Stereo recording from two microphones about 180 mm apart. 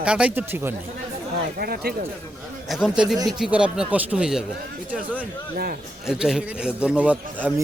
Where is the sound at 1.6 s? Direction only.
60° right (ahead or behind).